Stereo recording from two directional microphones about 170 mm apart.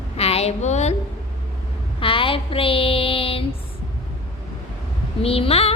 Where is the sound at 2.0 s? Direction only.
30° left (ahead or behind).